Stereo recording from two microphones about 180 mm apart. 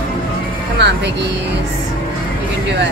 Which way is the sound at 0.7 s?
70° right (ahead or behind).